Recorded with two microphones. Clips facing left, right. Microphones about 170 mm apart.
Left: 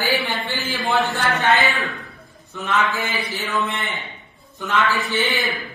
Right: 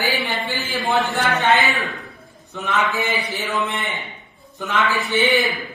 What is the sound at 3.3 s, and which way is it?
Speech, 20° right (ahead or behind).